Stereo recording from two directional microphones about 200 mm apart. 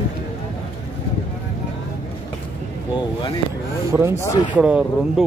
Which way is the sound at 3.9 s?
15° right (ahead or behind).